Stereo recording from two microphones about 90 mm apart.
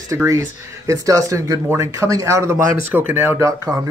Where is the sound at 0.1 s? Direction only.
30° right (ahead or behind).